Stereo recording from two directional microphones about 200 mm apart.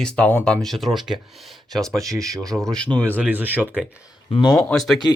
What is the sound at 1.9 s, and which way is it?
Speech, 15° right (ahead or behind).